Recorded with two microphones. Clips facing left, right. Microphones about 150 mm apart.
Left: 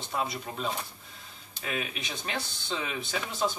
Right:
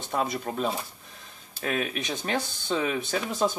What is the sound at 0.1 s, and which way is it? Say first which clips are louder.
Speech: right 5 dB; 45° right (ahead or behind).